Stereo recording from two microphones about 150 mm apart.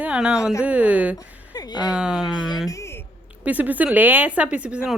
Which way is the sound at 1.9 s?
5° right (ahead or behind).